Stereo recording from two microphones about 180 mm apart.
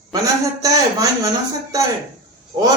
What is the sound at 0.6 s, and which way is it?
Speech, 20° right (ahead or behind).